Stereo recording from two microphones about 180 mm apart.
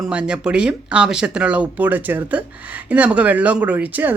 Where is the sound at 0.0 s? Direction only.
5° right (ahead or behind).